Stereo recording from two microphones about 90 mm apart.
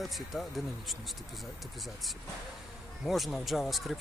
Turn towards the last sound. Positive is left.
turn(degrees=0)  # may be behind; listen again after turning